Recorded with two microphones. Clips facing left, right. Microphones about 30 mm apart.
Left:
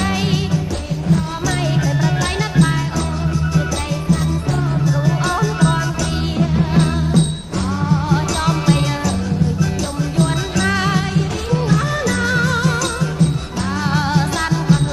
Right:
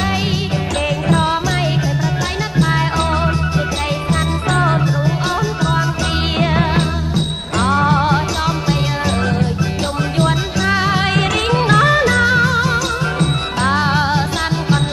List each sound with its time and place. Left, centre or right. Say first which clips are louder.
5.6 s music: left 1 dB; centre
6.3 s music: right 1 dB; right
10.7 s music: right 4 dB; centre
11.1 s music: right 4 dB; right
12.1 s music: right 4 dB; right
13.2 s music: right 3 dB; right
13.8 s music: right 2 dB; right